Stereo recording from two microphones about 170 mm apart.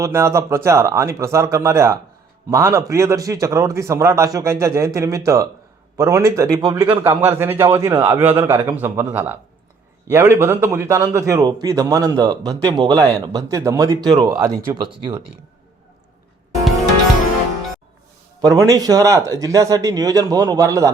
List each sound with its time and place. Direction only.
0.0 s a man's voice: 15° right (ahead or behind)
7.2 s a man's voice: 15° right (ahead or behind)
18.4 s a man's voice: 20° right (ahead or behind)